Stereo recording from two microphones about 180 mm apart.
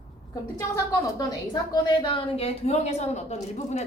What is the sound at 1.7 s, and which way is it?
A woman's voice, 30° left (ahead or behind).